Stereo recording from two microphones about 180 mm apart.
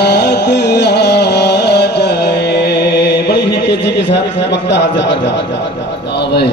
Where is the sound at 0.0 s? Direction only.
65° left (ahead or behind).